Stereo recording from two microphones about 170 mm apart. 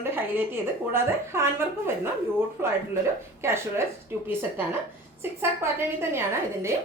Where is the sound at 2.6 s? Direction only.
15° right (ahead or behind).